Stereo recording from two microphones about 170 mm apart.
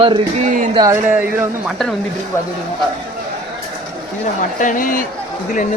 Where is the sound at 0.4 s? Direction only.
50° right (ahead or behind).